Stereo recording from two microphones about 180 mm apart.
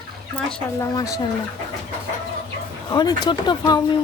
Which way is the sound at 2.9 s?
25° left (ahead or behind).